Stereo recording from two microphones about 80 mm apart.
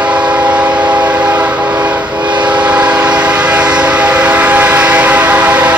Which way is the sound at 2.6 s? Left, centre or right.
Centre.